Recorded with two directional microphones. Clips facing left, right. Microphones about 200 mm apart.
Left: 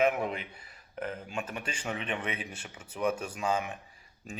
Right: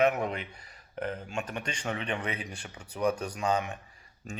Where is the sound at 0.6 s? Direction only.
35° right (ahead or behind).